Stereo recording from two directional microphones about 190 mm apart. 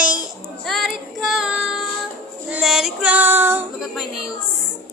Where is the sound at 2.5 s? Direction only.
Centre (ahead or behind).